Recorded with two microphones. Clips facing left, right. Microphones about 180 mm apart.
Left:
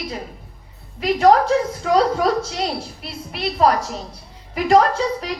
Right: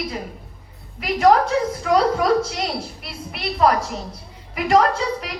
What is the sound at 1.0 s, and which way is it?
A woman's voice, 35° left (ahead or behind).